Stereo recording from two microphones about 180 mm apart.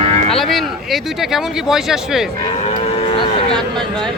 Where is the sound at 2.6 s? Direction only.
35° left (ahead or behind).